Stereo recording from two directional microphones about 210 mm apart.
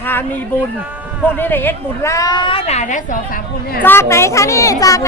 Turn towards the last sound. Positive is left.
turn(degrees=15)  # may be behind; listen again after turning